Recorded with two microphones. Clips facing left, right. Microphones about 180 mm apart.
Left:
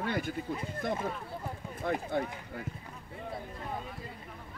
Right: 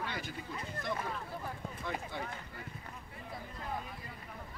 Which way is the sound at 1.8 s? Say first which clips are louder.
Left 9 dB; 50° left (ahead or behind).